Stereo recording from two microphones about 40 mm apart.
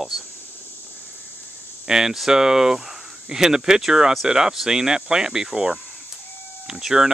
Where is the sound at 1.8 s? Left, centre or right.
Centre.